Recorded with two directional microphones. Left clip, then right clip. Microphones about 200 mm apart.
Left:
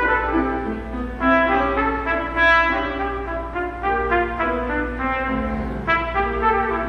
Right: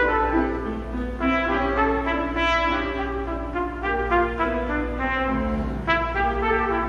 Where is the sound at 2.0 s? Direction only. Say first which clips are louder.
Left 5 dB; 15° right (ahead or behind).